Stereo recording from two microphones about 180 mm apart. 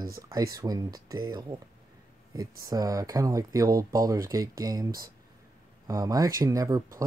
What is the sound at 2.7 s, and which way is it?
Speech, 20° right (ahead or behind).